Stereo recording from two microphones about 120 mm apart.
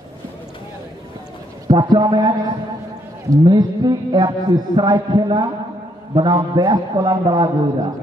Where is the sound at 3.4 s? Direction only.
35° right (ahead or behind).